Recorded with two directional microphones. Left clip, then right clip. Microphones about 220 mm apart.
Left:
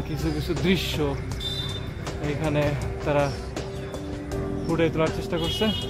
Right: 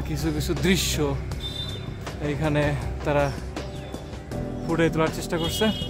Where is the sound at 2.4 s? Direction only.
20° right (ahead or behind).